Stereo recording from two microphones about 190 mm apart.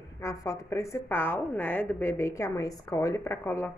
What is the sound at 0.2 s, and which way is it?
A woman's voice, 15° left (ahead or behind).